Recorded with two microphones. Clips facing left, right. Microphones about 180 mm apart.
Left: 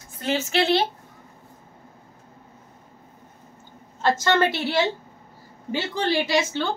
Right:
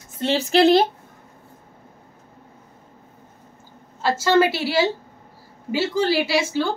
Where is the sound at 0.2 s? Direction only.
35° right (ahead or behind).